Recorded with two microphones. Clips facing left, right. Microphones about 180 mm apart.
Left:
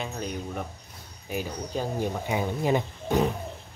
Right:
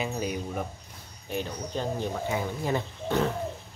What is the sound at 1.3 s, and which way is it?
Speech, 5° left (ahead or behind).